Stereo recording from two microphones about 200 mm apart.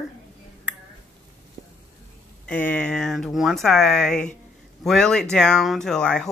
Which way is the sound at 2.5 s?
5° left (ahead or behind).